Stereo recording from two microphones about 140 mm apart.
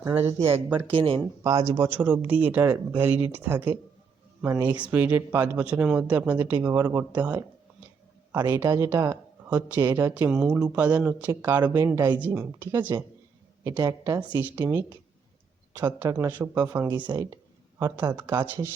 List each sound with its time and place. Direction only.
0.1 s speech: 15° right (ahead or behind)
0.9 s speech: 40° right (ahead or behind)
1.5 s speech: 20° right (ahead or behind)
8.4 s speech: 25° right (ahead or behind); by 9.8 s 10° right (ahead or behind)
9.8 s speech: 20° right (ahead or behind)
10.2 s speech: 5° right (ahead or behind); by 12.2 s 25° right (ahead or behind)
12.2 s speech: 15° right (ahead or behind)
13.7 s speech: 25° right (ahead or behind)
14.3 s speech: 15° right (ahead or behind)
15.8 s speech: 15° right (ahead or behind)
17.1 s speech: 30° right (ahead or behind)
17.7 s speech: 20° right (ahead or behind)